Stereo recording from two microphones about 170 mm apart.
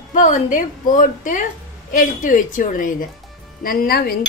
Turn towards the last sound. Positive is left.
turn(degrees=60)  # may be behind; listen again after turning